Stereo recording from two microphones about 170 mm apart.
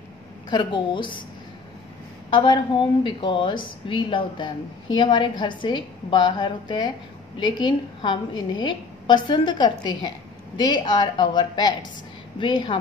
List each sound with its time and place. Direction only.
0.5 s a woman's voice: 25° left (ahead or behind)
2.3 s a woman's voice: 30° left (ahead or behind)